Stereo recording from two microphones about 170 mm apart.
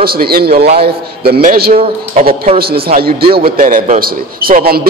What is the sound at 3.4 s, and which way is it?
A man's voice, 55° right (ahead or behind).